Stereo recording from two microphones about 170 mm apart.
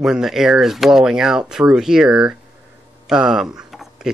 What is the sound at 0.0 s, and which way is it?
Speech, centre (ahead or behind).